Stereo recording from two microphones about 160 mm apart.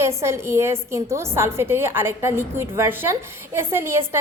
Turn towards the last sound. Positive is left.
turn(degrees=-15)  # may be behind; listen again after turning